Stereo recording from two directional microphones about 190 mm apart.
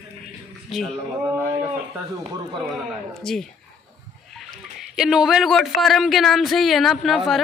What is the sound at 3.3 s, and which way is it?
Speech, 5° left (ahead or behind).